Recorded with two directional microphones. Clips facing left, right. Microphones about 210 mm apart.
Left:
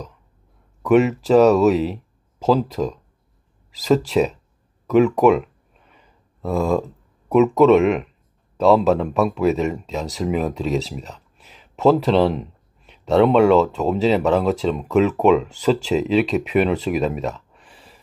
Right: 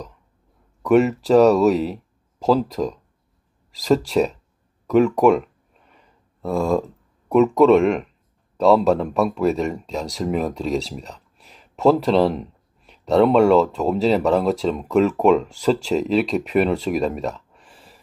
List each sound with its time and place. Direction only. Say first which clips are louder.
0.8 s speech: even; centre (ahead or behind)
4.8 s a sound: left 1 dB; centre (ahead or behind)
7.2 s speech: even; centre (ahead or behind)